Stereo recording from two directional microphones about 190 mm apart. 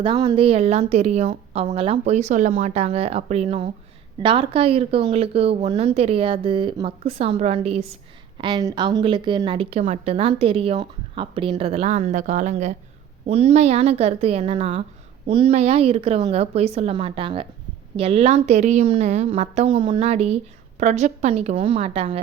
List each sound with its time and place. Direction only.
0.0 s a woman's voice: 25° right (ahead or behind)